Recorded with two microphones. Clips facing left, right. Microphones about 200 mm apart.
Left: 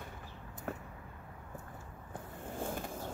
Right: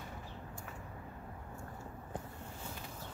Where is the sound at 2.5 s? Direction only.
50° left (ahead or behind).